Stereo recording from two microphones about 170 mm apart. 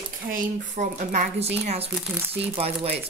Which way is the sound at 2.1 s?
10° right (ahead or behind).